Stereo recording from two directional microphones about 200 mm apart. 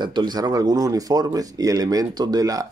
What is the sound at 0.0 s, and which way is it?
Speech, 20° right (ahead or behind).